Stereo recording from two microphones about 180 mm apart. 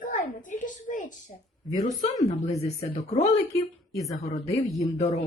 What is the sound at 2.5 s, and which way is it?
Speech, 35° left (ahead or behind).